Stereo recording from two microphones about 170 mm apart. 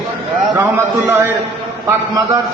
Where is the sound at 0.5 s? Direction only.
15° right (ahead or behind).